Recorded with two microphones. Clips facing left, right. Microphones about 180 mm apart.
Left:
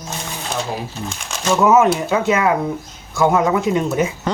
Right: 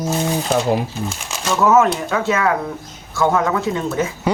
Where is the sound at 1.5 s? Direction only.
15° left (ahead or behind).